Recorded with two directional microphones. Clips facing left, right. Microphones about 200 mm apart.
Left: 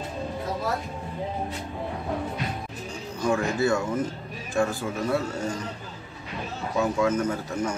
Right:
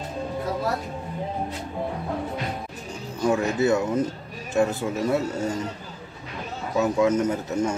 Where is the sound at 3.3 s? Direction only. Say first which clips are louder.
Right 2 dB; 20° right (ahead or behind).